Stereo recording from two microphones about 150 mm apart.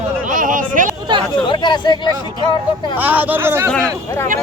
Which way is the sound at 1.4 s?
30° left (ahead or behind).